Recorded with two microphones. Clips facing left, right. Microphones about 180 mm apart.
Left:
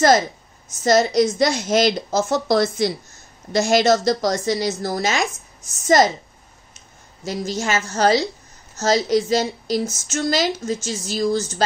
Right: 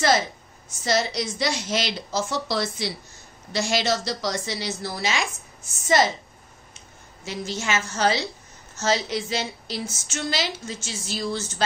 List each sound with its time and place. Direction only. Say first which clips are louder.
0.8 s a woman's voice: left 9 dB; 45° left (ahead or behind)
7.2 s a woman's voice: left 5 dB; 40° left (ahead or behind)